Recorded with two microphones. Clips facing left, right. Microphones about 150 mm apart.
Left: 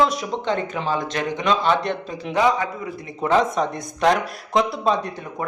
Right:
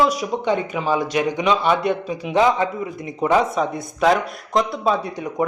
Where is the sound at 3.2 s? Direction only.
10° right (ahead or behind).